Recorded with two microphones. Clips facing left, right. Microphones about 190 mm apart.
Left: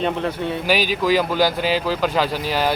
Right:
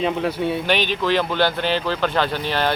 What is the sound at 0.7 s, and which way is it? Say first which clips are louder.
Speech: left 5 dB; 10° left (ahead or behind).